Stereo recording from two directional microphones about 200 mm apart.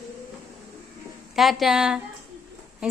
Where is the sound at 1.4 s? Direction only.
Centre (ahead or behind).